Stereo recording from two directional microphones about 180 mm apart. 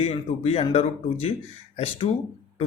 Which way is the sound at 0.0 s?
35° left (ahead or behind).